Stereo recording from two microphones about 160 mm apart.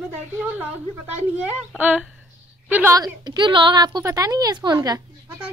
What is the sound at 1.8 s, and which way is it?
A woman's voice, 10° right (ahead or behind).